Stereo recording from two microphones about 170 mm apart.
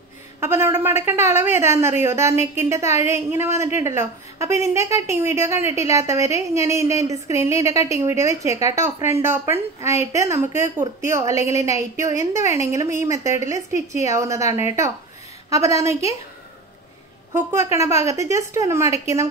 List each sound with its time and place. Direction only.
0.4 s a woman's voice: 15° right (ahead or behind)
17.3 s a woman's voice: 15° right (ahead or behind)